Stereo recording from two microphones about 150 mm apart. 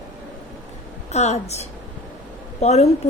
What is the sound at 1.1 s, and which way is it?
Speech, 45° left (ahead or behind).